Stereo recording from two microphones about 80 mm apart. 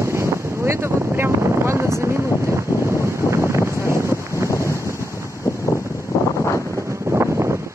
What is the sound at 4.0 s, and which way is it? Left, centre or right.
Wind noise, right.